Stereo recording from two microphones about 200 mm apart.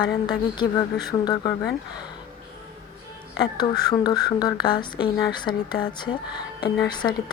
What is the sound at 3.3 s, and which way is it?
A woman's voice, 20° left (ahead or behind).